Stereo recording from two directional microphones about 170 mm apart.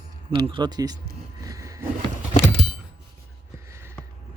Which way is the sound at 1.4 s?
20° right (ahead or behind).